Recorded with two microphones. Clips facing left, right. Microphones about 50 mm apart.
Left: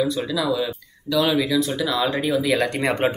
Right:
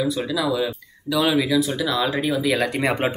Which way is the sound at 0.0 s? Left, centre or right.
Centre.